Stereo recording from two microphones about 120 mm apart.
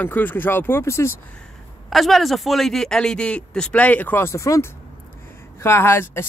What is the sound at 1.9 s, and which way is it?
Speech, centre (ahead or behind).